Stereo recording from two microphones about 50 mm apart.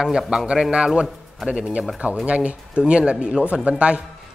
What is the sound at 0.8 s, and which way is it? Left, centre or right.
Speech, centre.